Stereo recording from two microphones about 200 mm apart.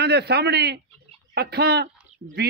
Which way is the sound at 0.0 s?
55° right (ahead or behind).